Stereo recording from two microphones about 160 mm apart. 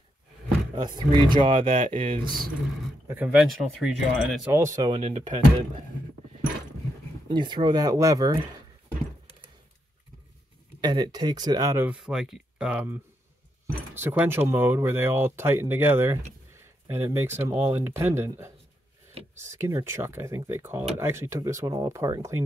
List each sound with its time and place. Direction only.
0.7 s speech: 25° right (ahead or behind)
3.3 s speech: centre (ahead or behind)
4.5 s speech: 15° right (ahead or behind)
4.8 s speech: 35° right (ahead or behind)
7.2 s speech: 30° right (ahead or behind)
10.8 s speech: 25° right (ahead or behind)
11.8 s speech: 5° right (ahead or behind)